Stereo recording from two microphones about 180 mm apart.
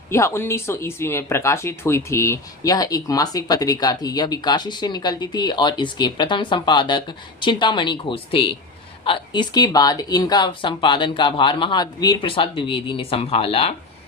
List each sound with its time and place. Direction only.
0.1 s speech: 15° left (ahead or behind); by 13.7 s 30° left (ahead or behind)